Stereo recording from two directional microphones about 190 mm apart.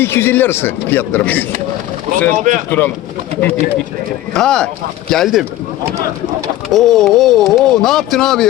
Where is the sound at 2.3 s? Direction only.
45° right (ahead or behind).